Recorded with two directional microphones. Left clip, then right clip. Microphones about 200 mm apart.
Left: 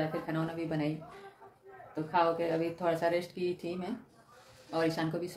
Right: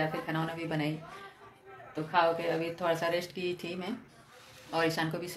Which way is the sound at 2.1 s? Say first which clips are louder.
Right 1 dB; 5° left (ahead or behind).